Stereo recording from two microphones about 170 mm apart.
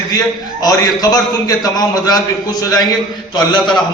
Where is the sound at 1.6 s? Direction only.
20° left (ahead or behind).